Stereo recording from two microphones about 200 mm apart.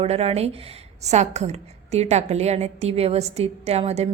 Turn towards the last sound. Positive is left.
turn(degrees=-30)  # may be behind; listen again after turning